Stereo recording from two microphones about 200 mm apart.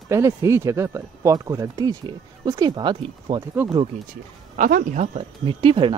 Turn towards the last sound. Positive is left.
turn(degrees=-25)  # may be behind; listen again after turning